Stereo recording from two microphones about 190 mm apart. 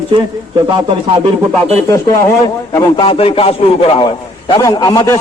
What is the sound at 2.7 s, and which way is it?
A man's voice, 25° left (ahead or behind).